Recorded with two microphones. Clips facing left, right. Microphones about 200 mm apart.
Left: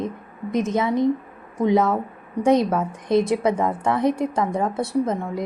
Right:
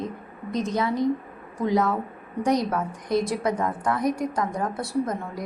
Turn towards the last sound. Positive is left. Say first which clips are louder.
# left 4 dB
turn(degrees=25)  # may be behind; listen again after turning